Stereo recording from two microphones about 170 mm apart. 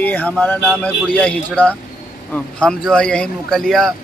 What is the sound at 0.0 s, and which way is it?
Speech, 10° left (ahead or behind).